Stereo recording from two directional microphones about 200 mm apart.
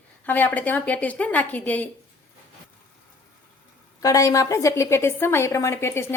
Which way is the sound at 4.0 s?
15° left (ahead or behind).